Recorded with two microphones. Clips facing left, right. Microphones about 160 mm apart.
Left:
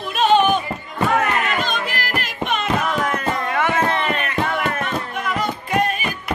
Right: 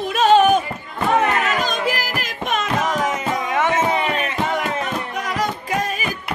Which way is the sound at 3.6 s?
20° right (ahead or behind).